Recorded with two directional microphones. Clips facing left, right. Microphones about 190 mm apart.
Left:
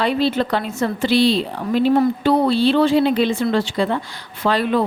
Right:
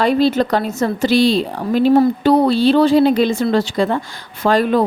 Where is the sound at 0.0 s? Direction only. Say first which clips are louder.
Right 4 dB; 45° right (ahead or behind).